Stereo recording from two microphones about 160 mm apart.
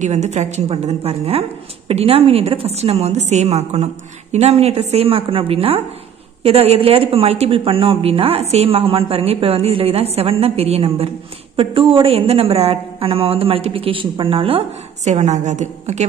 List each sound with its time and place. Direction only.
0.0 s speech: 45° right (ahead or behind)
15.0 s speech: 45° right (ahead or behind)